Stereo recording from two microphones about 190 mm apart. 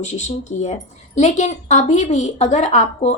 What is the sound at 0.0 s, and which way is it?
A woman's voice, 40° left (ahead or behind).